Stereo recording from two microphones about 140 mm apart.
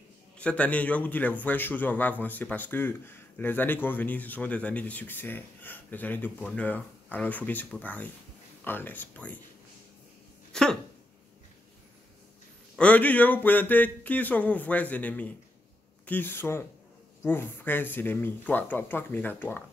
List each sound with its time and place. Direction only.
0.4 s a man's voice: 10° left (ahead or behind)
10.5 s a sound: 5° left (ahead or behind)
12.7 s a man's voice: 10° left (ahead or behind)